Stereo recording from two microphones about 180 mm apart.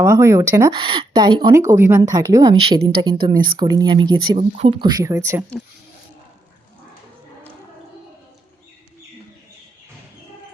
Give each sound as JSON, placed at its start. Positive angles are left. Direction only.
{"t": 0.0, "sound": "speech", "side_deg": -15}
{"t": 0.8, "sound": "a woman's voice", "side_deg": -30}